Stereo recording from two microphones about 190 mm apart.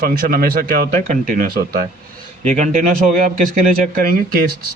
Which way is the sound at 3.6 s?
50° right (ahead or behind).